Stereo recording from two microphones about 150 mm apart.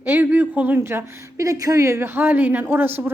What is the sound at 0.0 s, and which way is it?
A woman's voice, 15° right (ahead or behind).